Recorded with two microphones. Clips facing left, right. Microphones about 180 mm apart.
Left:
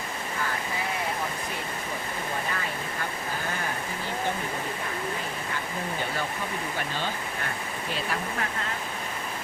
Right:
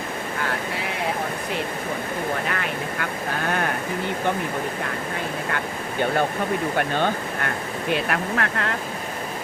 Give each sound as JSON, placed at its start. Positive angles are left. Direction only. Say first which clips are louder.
{"t": 2.5, "sound": "vehicle", "louder": "right 5 dB", "side_deg": -70}
{"t": 5.5, "sound": "speech", "louder": "right 4 dB", "side_deg": -60}